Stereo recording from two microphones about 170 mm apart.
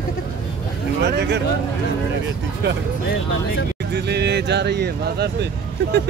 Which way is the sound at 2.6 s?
80° right.